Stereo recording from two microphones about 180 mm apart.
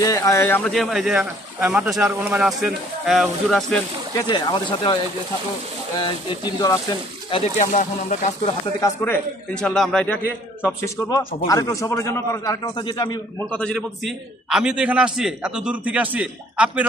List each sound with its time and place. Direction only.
0.0 s a man's voice: 20° left (ahead or behind); by 3.6 s centre (ahead or behind)
4.1 s a man's voice: 25° left (ahead or behind)
7.6 s speech: 45° left (ahead or behind)
8.8 s a man's voice: 10° left (ahead or behind)
10.8 s a man's voice: 15° left (ahead or behind)
13.5 s a man's voice: 5° left (ahead or behind)